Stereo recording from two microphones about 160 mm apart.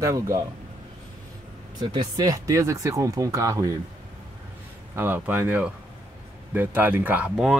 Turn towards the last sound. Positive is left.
turn(degrees=-5)  # may be behind; listen again after turning